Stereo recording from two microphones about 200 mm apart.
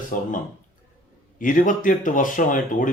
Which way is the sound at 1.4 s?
40° left (ahead or behind).